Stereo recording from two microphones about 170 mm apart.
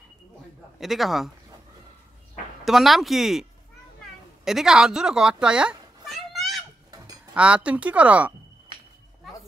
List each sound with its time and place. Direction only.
0.7 s speech: centre (ahead or behind)
2.6 s speech: centre (ahead or behind)
4.5 s speech: 5° right (ahead or behind)